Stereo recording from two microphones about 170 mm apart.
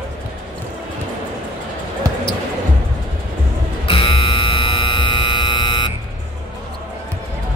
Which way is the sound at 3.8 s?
30° left (ahead or behind).